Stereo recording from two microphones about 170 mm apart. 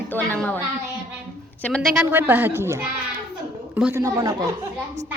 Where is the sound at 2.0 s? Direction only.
10° right (ahead or behind).